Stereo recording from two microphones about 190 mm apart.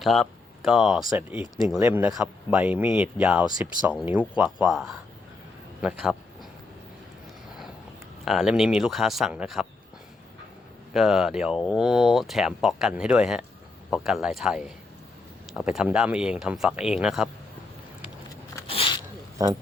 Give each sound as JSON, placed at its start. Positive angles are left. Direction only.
{"t": 0.0, "sound": "speech", "side_deg": 0}
{"t": 8.2, "sound": "speech", "side_deg": 0}
{"t": 10.9, "sound": "speech", "side_deg": 0}
{"t": 18.7, "sound": "a sound", "side_deg": 25}
{"t": 19.4, "sound": "speech", "side_deg": -20}